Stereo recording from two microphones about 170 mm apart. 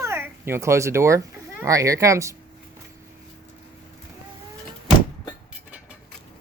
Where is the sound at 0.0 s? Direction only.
15° right (ahead or behind).